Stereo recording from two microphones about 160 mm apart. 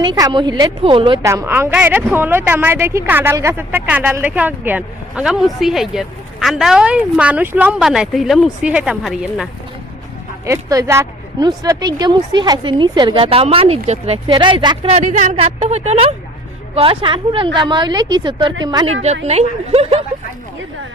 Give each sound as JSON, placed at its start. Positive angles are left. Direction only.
{"t": 0.0, "sound": "speech", "side_deg": -25}
{"t": 1.2, "sound": "speech", "side_deg": -20}
{"t": 10.4, "sound": "speech", "side_deg": -20}
{"t": 14.3, "sound": "speech", "side_deg": -30}
{"t": 19.0, "sound": "speech", "side_deg": -40}